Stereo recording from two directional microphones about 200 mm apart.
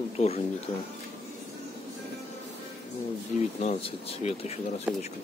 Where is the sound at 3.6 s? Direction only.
30° left (ahead or behind).